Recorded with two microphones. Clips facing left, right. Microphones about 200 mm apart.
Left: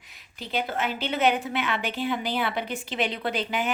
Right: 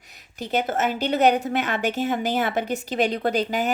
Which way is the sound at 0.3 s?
45° right (ahead or behind).